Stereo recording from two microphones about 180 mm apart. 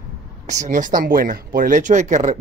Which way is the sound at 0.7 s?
45° right (ahead or behind).